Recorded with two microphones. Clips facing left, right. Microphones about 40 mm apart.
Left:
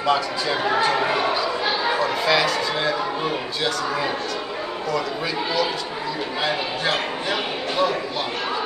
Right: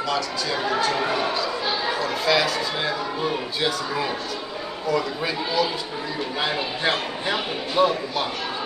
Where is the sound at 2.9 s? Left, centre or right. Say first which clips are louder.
Left 2 dB; centre.